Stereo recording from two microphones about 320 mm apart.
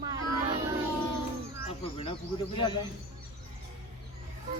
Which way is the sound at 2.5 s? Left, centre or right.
Centre.